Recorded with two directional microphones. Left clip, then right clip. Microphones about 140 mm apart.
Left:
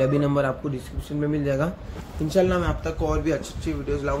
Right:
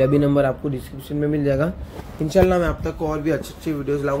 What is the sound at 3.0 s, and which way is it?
Speech, 15° right (ahead or behind).